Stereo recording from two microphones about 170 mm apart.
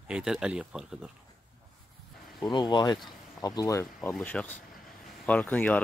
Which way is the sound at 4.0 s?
5° left (ahead or behind).